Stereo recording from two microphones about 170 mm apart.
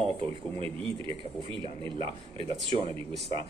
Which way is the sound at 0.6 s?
30° right (ahead or behind).